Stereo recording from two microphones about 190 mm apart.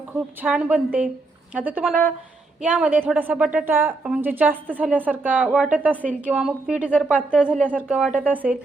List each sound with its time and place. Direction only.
0.1 s a woman's voice: 5° right (ahead or behind)